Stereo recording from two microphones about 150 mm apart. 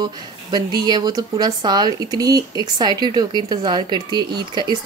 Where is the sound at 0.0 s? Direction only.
30° right (ahead or behind).